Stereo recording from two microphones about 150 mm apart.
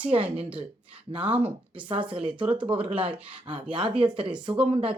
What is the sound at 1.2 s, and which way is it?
Speech, 10° right (ahead or behind).